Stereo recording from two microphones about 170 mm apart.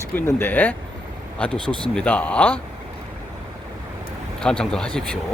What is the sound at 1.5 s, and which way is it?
Speech, 30° left (ahead or behind).